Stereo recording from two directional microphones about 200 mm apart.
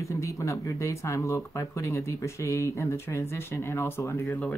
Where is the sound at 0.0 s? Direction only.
15° left (ahead or behind).